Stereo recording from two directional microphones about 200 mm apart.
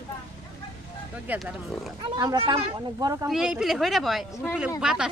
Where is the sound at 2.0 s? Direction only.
20° right (ahead or behind).